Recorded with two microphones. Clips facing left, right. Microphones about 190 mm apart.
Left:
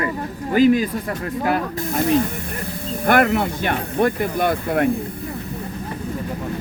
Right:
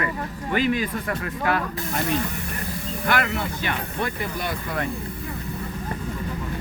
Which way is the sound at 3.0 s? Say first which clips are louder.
Left 8 dB; 50° left (ahead or behind).